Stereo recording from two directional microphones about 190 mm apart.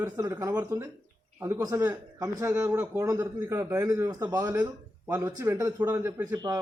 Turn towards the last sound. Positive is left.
turn(degrees=-15)  # may be behind; listen again after turning